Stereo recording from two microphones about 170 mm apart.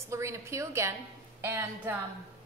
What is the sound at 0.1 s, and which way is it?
A woman's voice, 15° right (ahead or behind).